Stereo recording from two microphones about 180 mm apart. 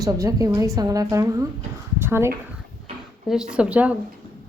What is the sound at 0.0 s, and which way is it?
A woman's voice, 20° right (ahead or behind).